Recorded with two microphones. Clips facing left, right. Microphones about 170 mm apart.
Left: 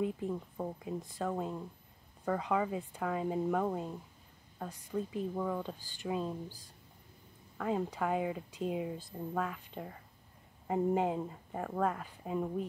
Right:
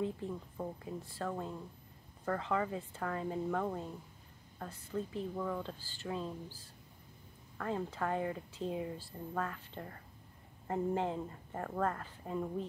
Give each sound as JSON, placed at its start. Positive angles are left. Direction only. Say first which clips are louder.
{"t": 0.0, "sound": "speech", "louder": "left 3 dB", "side_deg": 15}